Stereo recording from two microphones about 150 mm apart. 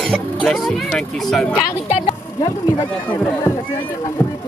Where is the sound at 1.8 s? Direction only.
50° left (ahead or behind).